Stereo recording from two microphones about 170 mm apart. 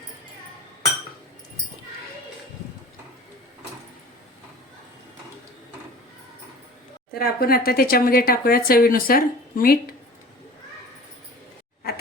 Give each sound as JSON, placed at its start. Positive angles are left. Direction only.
{"t": 7.1, "sound": "speech", "side_deg": 60}